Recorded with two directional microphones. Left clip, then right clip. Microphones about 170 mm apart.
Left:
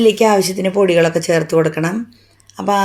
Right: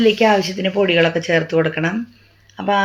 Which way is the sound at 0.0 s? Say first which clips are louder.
Left 2 dB; 30° left (ahead or behind).